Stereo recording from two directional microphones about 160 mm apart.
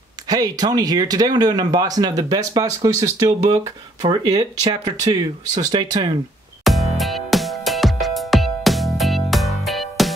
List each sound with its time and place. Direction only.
0.3 s speech: 25° right (ahead or behind)
6.6 s music: centre (ahead or behind)